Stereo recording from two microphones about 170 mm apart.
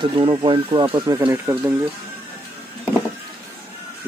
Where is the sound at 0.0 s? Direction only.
30° right (ahead or behind).